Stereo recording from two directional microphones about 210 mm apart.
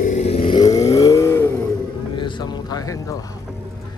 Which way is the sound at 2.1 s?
20° left (ahead or behind).